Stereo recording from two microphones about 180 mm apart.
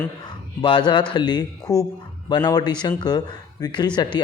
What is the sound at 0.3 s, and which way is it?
Speech, 25° left (ahead or behind).